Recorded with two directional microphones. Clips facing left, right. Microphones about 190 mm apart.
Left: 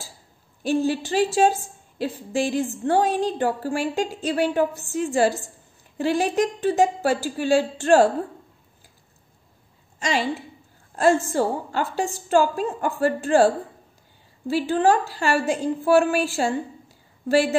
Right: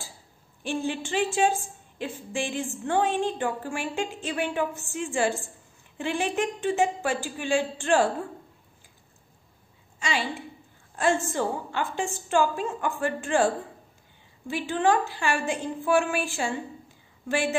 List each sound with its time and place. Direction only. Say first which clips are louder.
0.7 s a woman's voice: left 7 dB; 40° left (ahead or behind)
9.9 s a woman's voice: left 5 dB; 40° left (ahead or behind)
14.5 s a woman's voice: left 5 dB; 35° left (ahead or behind)